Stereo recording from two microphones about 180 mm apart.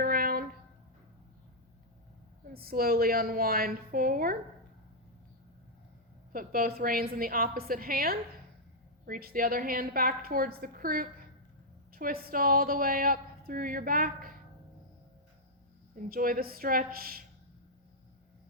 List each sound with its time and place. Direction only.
0.0 s a sound: 55° right (ahead or behind)
2.5 s a woman's voice: 55° right (ahead or behind)
6.3 s a woman's voice: 50° right (ahead or behind)
16.0 s a woman's voice: 50° right (ahead or behind)